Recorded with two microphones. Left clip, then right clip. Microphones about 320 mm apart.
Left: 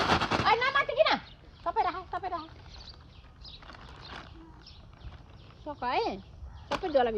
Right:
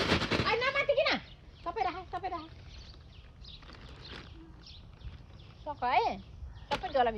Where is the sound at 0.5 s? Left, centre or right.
Centre.